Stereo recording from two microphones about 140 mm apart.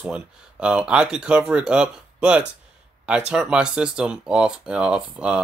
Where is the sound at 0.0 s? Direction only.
5° right (ahead or behind).